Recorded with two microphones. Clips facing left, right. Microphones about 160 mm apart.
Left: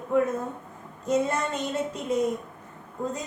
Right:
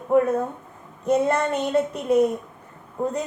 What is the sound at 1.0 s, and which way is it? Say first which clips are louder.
Speech: right 5 dB; 60° right (ahead or behind).